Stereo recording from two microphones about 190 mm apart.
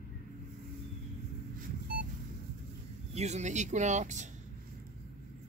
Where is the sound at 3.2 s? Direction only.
35° right (ahead or behind).